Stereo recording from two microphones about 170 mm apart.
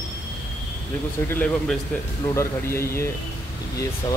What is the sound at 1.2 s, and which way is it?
Speech, 10° left (ahead or behind).